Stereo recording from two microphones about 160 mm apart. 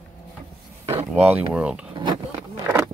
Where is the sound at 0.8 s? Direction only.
10° right (ahead or behind).